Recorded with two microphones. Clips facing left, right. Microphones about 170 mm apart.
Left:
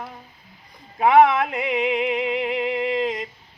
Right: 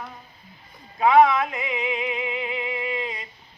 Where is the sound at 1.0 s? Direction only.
55° left (ahead or behind).